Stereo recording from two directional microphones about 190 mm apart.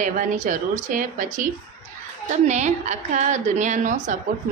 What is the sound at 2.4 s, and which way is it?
A woman's voice, 40° right (ahead or behind).